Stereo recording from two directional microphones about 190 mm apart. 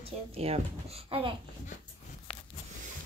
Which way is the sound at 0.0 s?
30° right (ahead or behind).